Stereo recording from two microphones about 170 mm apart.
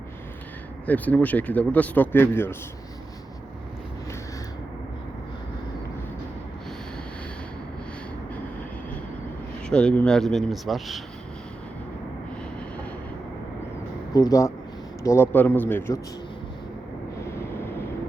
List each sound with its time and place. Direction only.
0.9 s speech: 10° left (ahead or behind)
9.6 s speech: 5° left (ahead or behind)
14.1 s speech: 20° left (ahead or behind)